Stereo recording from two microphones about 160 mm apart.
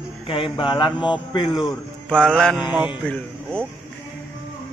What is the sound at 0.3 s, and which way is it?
Mantra, 35° left (ahead or behind).